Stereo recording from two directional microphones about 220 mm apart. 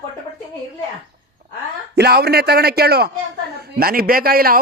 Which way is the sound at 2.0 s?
45° right (ahead or behind).